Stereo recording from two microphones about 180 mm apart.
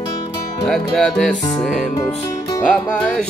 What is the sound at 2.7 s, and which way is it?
Music, centre (ahead or behind).